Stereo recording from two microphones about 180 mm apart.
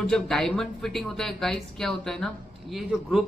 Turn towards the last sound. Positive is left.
turn(degrees=0)  # may be behind; listen again after turning